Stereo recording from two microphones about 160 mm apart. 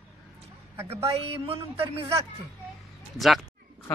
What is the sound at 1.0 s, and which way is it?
A man's voice, 35° right (ahead or behind).